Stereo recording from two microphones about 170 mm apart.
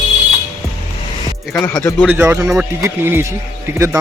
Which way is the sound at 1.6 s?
15° left (ahead or behind).